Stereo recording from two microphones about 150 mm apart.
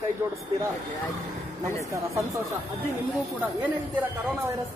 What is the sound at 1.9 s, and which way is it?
A woman's voice, 20° right (ahead or behind).